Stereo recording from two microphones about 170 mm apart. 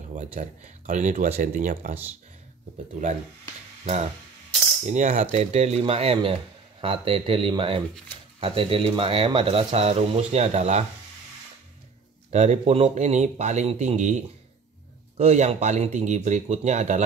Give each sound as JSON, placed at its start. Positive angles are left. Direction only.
{"t": 0.1, "sound": "speech", "side_deg": -45}
{"t": 4.8, "sound": "a man's voice", "side_deg": -45}
{"t": 12.3, "sound": "speech", "side_deg": -40}